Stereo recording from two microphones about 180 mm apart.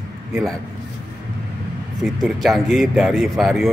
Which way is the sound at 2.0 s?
Centre (ahead or behind).